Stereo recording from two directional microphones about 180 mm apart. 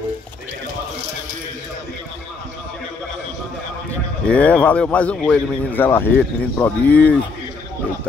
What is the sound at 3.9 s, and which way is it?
Speech, 5° left (ahead or behind).